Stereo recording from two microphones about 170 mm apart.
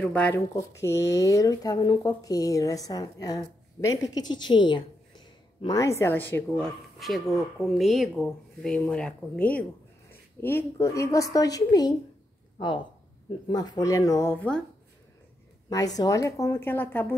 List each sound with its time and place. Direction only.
0.0 s a woman's voice: 5° left (ahead or behind)
0.6 s a woman's voice: 15° left (ahead or behind)
15.7 s a woman's voice: 20° left (ahead or behind)